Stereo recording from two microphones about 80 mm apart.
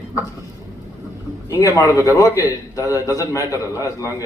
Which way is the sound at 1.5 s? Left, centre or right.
Left.